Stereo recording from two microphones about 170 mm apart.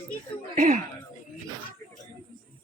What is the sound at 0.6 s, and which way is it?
Speech, 45° right (ahead or behind).